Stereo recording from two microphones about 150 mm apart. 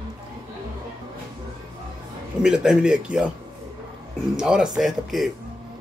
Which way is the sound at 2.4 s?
5° right (ahead or behind).